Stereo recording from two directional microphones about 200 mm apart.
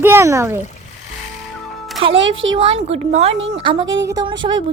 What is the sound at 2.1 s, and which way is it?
Speech, 70° right (ahead or behind).